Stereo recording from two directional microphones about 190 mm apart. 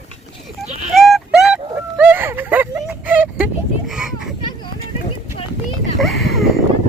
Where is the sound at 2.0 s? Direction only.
10° right (ahead or behind).